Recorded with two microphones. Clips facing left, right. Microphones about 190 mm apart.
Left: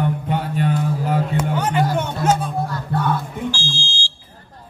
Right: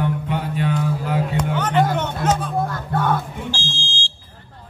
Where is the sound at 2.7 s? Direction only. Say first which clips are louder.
Even; 50° right (ahead or behind).